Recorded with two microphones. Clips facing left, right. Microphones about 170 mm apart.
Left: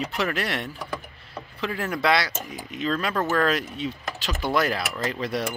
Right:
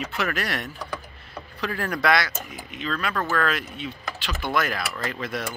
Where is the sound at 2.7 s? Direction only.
40° left (ahead or behind).